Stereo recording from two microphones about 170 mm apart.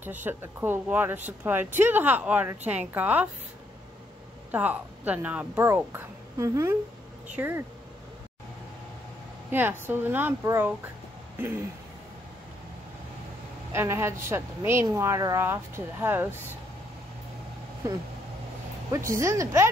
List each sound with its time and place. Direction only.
0.0 s a woman's voice: 10° right (ahead or behind)
4.5 s a woman's voice: 10° right (ahead or behind)
9.5 s a woman's voice: 10° right (ahead or behind)
13.7 s a woman's voice: 15° right (ahead or behind)
18.9 s a woman's voice: 15° right (ahead or behind)